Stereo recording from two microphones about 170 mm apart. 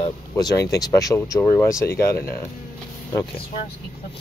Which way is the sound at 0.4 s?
20° left (ahead or behind).